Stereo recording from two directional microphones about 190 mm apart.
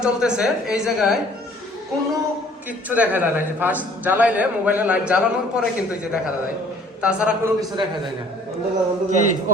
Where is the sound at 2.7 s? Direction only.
10° right (ahead or behind).